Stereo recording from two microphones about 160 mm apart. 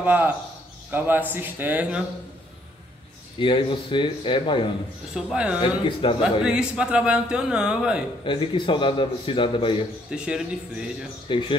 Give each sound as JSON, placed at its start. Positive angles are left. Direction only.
{"t": 0.0, "sound": "speech", "side_deg": -10}
{"t": 3.3, "sound": "a man's voice", "side_deg": 30}
{"t": 5.1, "sound": "speech", "side_deg": -5}
{"t": 5.6, "sound": "a man's voice", "side_deg": 30}
{"t": 6.4, "sound": "speech", "side_deg": -5}
{"t": 8.3, "sound": "a man's voice", "side_deg": 30}
{"t": 10.1, "sound": "speech", "side_deg": -5}
{"t": 11.2, "sound": "a man's voice", "side_deg": 30}